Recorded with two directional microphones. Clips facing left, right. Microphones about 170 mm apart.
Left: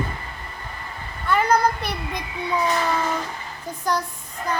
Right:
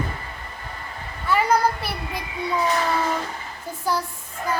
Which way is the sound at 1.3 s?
5° right (ahead or behind).